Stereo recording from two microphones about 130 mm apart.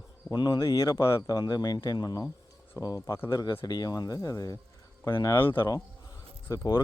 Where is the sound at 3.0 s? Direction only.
20° left (ahead or behind).